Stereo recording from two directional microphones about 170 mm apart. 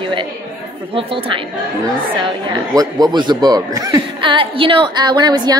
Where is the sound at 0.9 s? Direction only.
30° right (ahead or behind).